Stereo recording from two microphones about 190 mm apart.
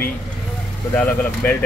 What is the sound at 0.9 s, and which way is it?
Speech, 5° left (ahead or behind).